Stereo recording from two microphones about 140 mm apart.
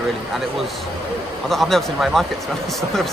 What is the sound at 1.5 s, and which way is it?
Speech, centre (ahead or behind).